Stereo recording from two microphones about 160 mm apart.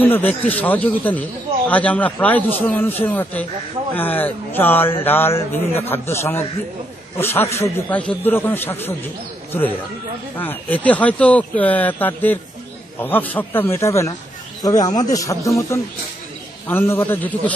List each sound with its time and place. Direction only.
0.0 s speech: 10° left (ahead or behind)
10.3 s a man's voice: 10° left (ahead or behind)